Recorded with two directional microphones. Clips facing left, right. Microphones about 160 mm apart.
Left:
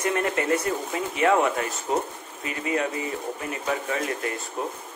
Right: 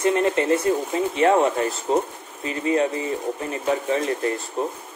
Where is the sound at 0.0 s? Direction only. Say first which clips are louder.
Right 5 dB; 25° right (ahead or behind).